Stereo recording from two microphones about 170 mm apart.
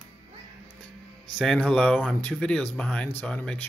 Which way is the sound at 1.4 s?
5° left (ahead or behind).